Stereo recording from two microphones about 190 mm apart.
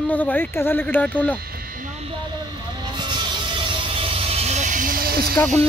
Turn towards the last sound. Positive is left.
turn(degrees=-50)  # may be behind; listen again after turning